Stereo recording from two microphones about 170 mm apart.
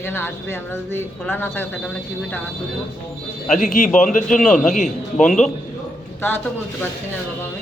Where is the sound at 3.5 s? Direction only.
50° left (ahead or behind).